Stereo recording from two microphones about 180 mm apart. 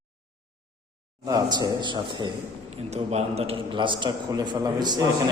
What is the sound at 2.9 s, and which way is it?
A man's voice, 35° right (ahead or behind).